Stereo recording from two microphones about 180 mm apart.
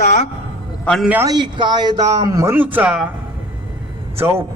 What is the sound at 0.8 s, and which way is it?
Speech, 5° left (ahead or behind).